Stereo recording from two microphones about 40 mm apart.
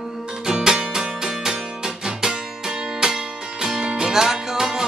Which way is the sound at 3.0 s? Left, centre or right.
Centre.